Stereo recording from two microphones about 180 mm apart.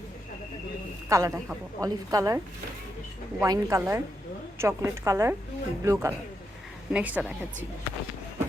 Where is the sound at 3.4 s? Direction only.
15° right (ahead or behind).